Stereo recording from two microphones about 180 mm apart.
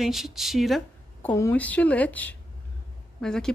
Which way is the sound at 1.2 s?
15° left (ahead or behind).